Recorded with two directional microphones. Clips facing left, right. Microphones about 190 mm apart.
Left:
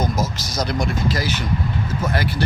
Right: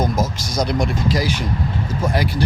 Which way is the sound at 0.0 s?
Centre (ahead or behind).